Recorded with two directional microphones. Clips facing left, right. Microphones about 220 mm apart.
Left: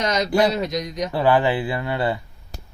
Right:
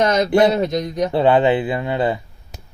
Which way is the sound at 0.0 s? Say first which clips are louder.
Right 6 dB; 50° right (ahead or behind).